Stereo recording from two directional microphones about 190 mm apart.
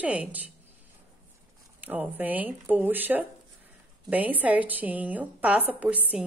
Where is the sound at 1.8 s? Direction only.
10° right (ahead or behind).